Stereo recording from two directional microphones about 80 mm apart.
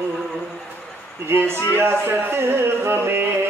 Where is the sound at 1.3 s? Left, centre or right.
Right.